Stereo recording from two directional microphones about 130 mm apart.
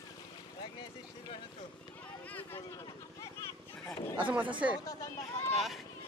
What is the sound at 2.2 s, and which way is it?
Speech, 10° left (ahead or behind).